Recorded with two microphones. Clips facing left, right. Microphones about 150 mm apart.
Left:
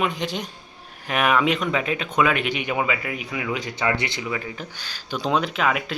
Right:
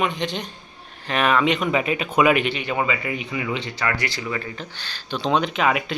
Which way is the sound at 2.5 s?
10° left (ahead or behind).